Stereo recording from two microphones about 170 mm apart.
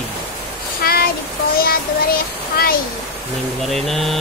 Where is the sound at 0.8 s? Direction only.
60° left (ahead or behind).